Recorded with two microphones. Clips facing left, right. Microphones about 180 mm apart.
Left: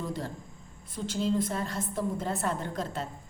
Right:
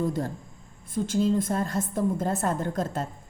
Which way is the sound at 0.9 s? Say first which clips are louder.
Right 5 dB; 50° right (ahead or behind).